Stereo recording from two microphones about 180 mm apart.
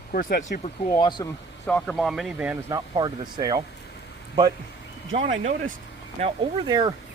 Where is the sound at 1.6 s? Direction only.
5° left (ahead or behind).